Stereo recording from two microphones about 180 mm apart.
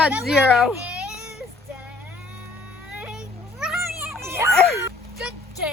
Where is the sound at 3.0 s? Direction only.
5° right (ahead or behind).